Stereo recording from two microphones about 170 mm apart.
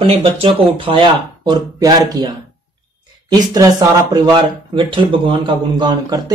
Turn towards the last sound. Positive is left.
turn(degrees=-25)  # may be behind; listen again after turning